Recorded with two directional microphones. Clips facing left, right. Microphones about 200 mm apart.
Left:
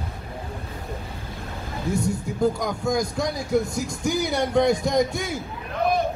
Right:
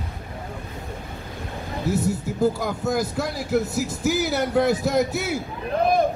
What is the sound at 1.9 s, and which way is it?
A man's voice, 5° right (ahead or behind).